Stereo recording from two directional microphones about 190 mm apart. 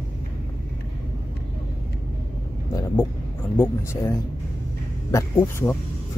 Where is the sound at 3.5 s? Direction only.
15° left (ahead or behind).